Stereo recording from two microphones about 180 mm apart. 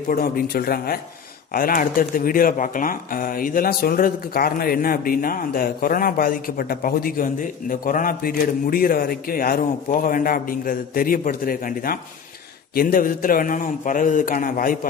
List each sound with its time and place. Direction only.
0.1 s speech: 55° left (ahead or behind)